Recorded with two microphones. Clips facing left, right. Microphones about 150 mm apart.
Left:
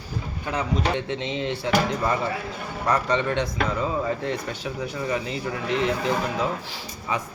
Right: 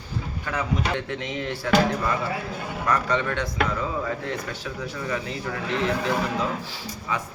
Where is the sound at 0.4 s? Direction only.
20° left (ahead or behind).